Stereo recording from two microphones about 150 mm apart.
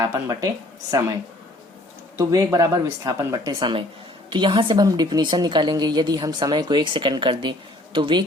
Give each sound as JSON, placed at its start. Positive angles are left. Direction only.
{"t": 0.0, "sound": "a woman's voice", "side_deg": -20}
{"t": 2.1, "sound": "a woman's voice", "side_deg": -20}